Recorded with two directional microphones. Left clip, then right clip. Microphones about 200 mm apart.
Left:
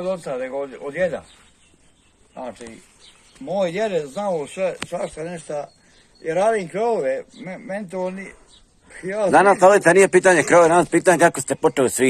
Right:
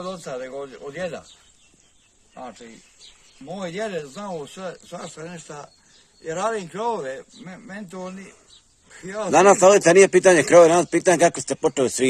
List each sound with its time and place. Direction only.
0.0 s speech: 15° right (ahead or behind)
3.4 s speech: 10° right (ahead or behind)
6.2 s speech: 90° right
6.7 s speech: centre (ahead or behind)
7.4 s speech: 90° right
9.0 s speech: 20° right (ahead or behind)